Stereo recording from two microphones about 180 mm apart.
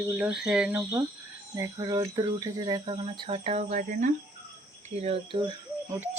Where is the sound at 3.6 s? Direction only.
45° right (ahead or behind).